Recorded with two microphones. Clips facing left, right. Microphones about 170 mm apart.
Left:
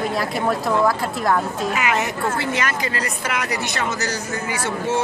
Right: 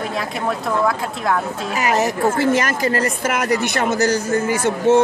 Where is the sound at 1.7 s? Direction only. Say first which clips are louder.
Right 7 dB; 40° right (ahead or behind).